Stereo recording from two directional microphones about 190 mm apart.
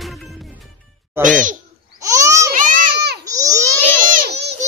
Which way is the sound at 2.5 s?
45° right (ahead or behind).